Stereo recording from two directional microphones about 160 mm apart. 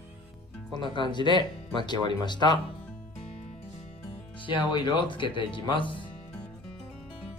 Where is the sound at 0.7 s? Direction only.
30° left (ahead or behind).